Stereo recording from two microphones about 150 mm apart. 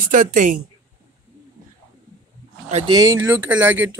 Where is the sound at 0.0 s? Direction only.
60° right (ahead or behind).